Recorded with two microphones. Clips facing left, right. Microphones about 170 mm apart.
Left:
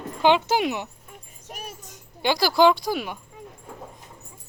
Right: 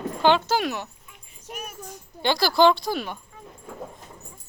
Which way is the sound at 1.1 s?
35° left (ahead or behind).